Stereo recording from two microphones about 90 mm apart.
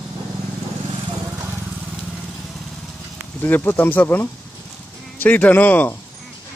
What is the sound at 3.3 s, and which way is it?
Speech, 20° left (ahead or behind).